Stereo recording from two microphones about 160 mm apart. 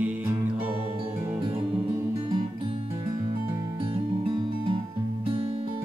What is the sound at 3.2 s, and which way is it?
Music, 25° right (ahead or behind).